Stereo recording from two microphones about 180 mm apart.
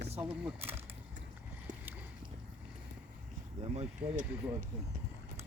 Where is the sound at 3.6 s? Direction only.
35° right (ahead or behind).